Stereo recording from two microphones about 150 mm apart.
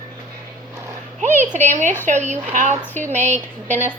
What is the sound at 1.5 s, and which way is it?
A woman's voice, 55° right (ahead or behind).